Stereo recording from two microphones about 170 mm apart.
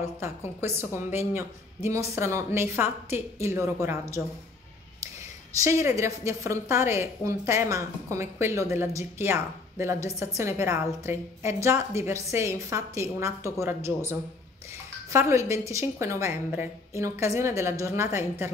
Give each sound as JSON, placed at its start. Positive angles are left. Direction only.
{"t": 0.0, "sound": "a woman's voice", "side_deg": -15}
{"t": 5.6, "sound": "a woman's voice", "side_deg": -15}